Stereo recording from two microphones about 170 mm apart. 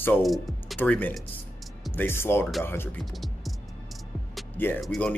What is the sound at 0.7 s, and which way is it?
Speech, 10° left (ahead or behind).